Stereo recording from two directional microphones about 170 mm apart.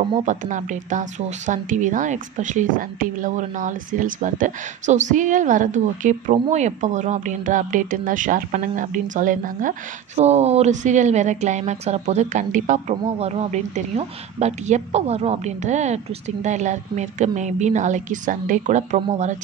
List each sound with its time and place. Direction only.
0.2 s speech: 45° right (ahead or behind)